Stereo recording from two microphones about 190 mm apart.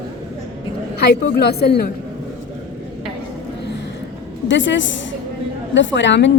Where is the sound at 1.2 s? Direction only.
55° left (ahead or behind).